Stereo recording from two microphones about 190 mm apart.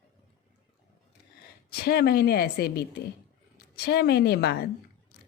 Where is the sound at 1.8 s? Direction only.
55° left (ahead or behind).